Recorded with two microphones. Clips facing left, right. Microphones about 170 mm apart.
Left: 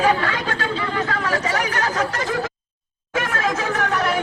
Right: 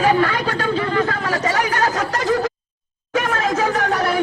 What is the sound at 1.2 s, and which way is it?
Chatter, 35° right (ahead or behind).